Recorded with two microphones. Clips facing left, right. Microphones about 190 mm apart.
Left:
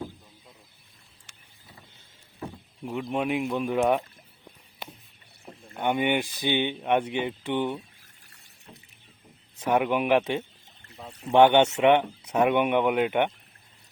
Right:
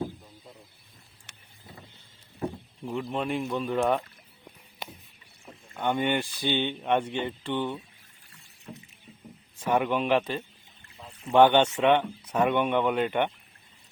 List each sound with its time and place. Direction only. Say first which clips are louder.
1.3 s vehicle: right 4 dB; 65° right (ahead or behind)
2.8 s speech: left 2 dB; 10° left (ahead or behind)
5.5 s rowboat: left 3 dB; 35° left (ahead or behind)
5.8 s speech: left 2 dB; 15° left (ahead or behind)
9.6 s speech: left 2 dB; 10° left (ahead or behind)